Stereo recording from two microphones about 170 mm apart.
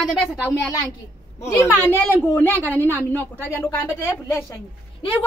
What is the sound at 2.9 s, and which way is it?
A woman's voice, 10° left (ahead or behind).